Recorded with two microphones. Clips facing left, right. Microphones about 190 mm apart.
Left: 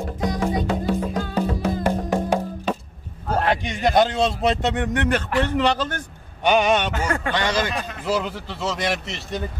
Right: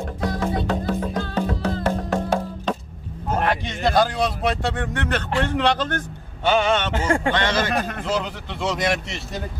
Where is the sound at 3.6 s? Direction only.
20° left (ahead or behind).